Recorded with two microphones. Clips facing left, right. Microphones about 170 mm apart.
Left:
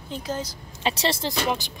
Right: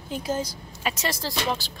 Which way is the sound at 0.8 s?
30° left (ahead or behind).